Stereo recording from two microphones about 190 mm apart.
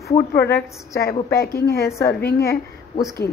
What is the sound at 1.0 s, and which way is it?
A woman's voice, 55° left (ahead or behind).